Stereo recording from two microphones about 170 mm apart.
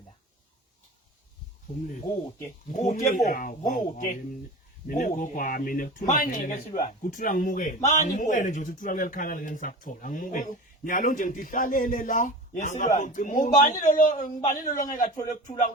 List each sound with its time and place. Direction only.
2.7 s a man's voice: 45° left (ahead or behind)